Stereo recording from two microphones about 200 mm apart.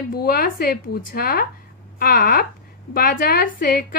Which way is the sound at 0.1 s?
50° left (ahead or behind).